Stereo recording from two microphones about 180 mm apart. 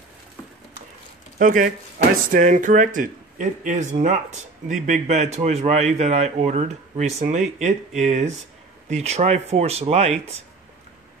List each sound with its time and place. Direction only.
1.4 s a man's voice: 50° right (ahead or behind)